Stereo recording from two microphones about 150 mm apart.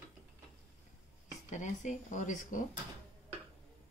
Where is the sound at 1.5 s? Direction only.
55° left (ahead or behind).